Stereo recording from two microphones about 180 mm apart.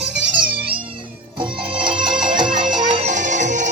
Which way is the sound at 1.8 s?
25° right (ahead or behind).